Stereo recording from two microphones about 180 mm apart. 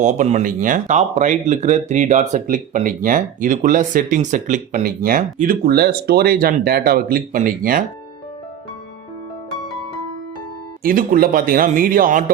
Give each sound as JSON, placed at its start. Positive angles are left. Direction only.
{"t": 0.0, "sound": "speech", "side_deg": -40}
{"t": 10.8, "sound": "speech", "side_deg": -50}